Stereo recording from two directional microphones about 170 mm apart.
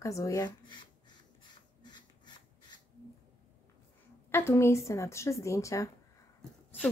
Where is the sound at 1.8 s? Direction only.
25° left (ahead or behind).